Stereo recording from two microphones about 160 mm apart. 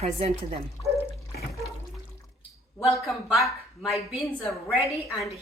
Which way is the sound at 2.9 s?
Centre (ahead or behind).